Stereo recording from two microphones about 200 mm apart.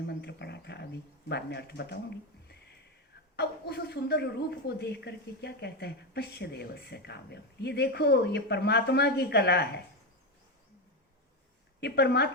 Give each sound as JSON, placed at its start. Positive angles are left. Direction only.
{"t": 0.1, "sound": "bird", "side_deg": 55}
{"t": 1.3, "sound": "a woman's voice", "side_deg": 55}
{"t": 3.3, "sound": "a woman's voice", "side_deg": 55}
{"t": 11.8, "sound": "a woman's voice", "side_deg": 55}